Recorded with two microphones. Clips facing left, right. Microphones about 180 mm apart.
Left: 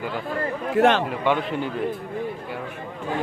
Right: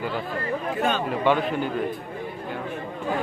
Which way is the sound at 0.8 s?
90° left.